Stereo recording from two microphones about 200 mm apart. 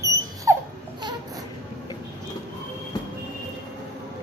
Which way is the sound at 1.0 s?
20° right (ahead or behind).